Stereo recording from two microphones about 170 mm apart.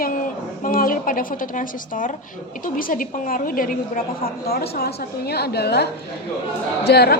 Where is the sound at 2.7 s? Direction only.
55° left (ahead or behind).